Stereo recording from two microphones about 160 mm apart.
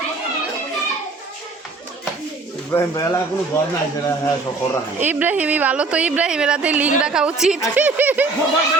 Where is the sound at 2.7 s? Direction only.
15° left (ahead or behind).